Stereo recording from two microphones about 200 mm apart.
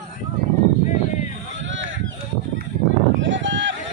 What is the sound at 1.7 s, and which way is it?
Honk, 70° right (ahead or behind).